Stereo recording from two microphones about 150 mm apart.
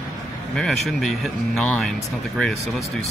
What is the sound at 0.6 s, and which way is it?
Speech, centre (ahead or behind).